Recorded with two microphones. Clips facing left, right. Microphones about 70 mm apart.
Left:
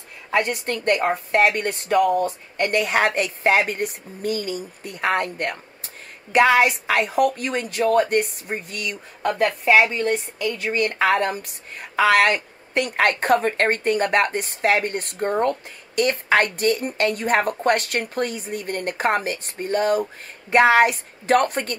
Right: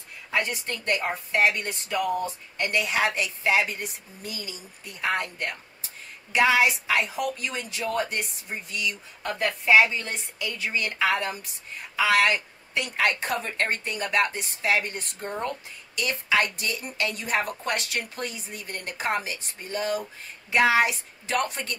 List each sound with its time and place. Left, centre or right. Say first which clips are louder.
0.3 s a woman's voice: left 6 dB; left